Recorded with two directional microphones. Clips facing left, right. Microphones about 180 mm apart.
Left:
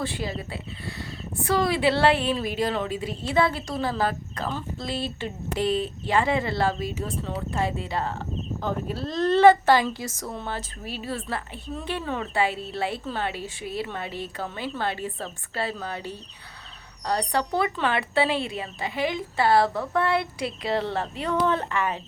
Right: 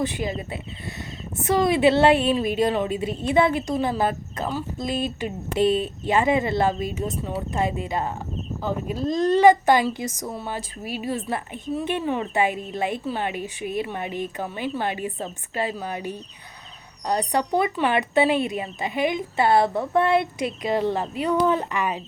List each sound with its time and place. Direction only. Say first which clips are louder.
0.0 s a woman's voice: right 4 dB; 20° right (ahead or behind)